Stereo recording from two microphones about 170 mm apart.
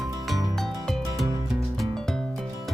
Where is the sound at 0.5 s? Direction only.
Centre (ahead or behind).